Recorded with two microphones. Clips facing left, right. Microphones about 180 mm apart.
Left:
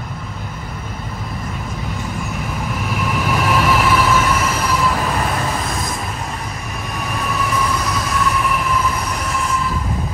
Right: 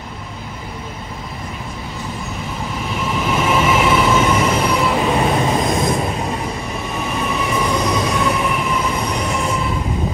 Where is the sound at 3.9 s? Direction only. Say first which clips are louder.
Right 1 dB; 25° right (ahead or behind).